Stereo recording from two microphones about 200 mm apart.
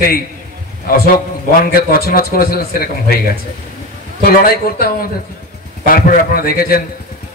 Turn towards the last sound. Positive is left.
turn(degrees=50)  # may be behind; listen again after turning